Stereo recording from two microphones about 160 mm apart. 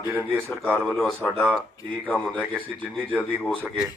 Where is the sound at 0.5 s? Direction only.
Centre (ahead or behind).